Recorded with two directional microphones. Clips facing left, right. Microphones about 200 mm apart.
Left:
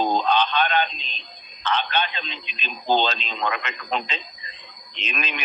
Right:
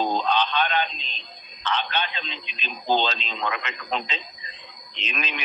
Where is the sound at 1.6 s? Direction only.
50° left (ahead or behind).